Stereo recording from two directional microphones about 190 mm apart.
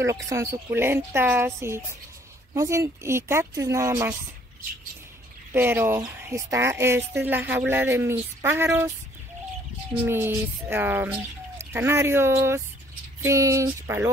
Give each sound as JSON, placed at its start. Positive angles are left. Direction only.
{"t": 0.3, "sound": "speech", "side_deg": -15}
{"t": 5.5, "sound": "speech", "side_deg": -10}
{"t": 10.0, "sound": "speech", "side_deg": -10}